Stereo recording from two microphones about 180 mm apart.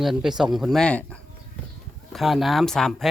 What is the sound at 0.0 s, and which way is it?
Speech, centre (ahead or behind).